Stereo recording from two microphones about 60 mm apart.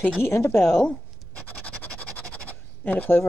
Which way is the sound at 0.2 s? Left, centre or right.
Left.